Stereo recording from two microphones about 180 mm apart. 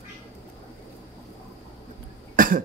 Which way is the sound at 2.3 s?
50° right (ahead or behind).